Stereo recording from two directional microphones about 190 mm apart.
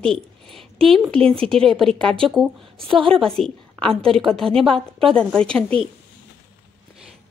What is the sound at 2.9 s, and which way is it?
Speech, 25° right (ahead or behind).